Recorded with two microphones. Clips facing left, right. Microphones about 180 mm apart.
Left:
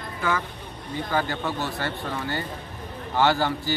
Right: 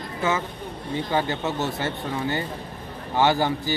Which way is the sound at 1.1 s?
20° right (ahead or behind).